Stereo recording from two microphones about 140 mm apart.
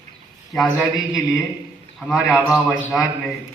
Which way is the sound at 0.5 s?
Centre (ahead or behind).